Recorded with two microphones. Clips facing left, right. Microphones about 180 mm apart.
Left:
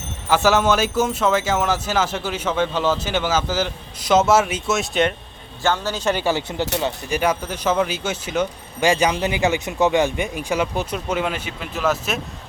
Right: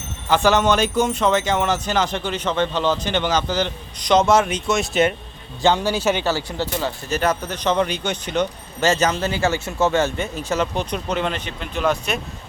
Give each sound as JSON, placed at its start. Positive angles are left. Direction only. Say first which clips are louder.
{"t": 0.3, "sound": "speech", "louder": "even", "side_deg": 5}
{"t": 5.6, "sound": "a man's voice", "louder": "right 3 dB", "side_deg": -15}
{"t": 6.2, "sound": "speech", "louder": "left 1 dB", "side_deg": 20}